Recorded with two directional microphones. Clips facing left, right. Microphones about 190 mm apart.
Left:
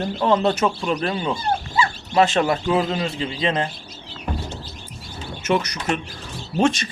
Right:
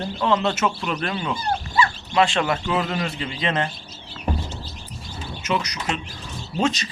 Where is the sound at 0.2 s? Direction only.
35° left (ahead or behind).